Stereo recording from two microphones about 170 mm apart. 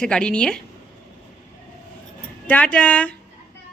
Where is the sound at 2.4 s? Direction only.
10° left (ahead or behind).